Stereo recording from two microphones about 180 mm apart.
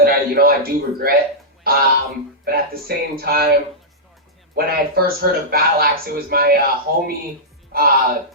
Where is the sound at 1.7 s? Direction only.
55° right (ahead or behind).